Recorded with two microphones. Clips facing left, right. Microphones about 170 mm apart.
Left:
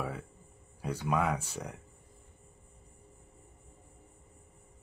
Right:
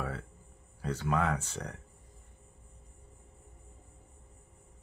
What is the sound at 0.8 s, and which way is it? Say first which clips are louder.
Speech: even; 10° left (ahead or behind).